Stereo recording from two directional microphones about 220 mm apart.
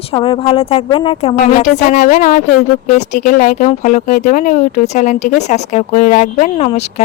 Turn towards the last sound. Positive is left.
turn(degrees=30)  # may be behind; listen again after turning